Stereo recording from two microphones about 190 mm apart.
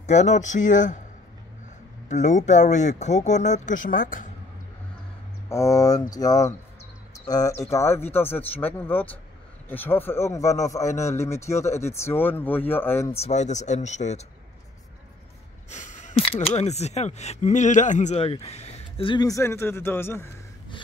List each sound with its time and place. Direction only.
0.0 s speech: 35° left (ahead or behind)
2.0 s speech: 40° left (ahead or behind)
5.5 s speech: 15° left (ahead or behind)
13.1 s speech: 35° left (ahead or behind)
15.7 s speech: 40° left (ahead or behind); by 20.2 s 10° left (ahead or behind)